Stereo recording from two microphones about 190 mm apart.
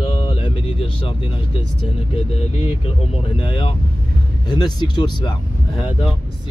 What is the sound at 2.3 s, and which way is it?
Speech, 30° left (ahead or behind).